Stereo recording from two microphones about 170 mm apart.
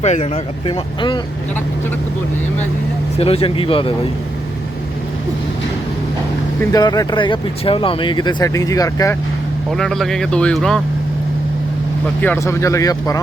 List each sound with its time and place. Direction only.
0.0 s speech: 40° left (ahead or behind)
0.7 s speech: 25° left (ahead or behind)
3.2 s speech: 35° left (ahead or behind)
6.7 s speech: 20° left (ahead or behind)
9.7 s speech: centre (ahead or behind)
12.2 s speech: 15° left (ahead or behind)